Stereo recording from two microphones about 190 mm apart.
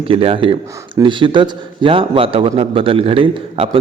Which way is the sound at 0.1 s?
30° right (ahead or behind).